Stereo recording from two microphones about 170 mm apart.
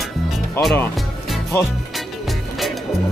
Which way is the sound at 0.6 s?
15° left (ahead or behind).